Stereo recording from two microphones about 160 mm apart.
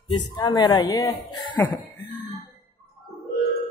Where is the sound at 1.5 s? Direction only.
15° left (ahead or behind).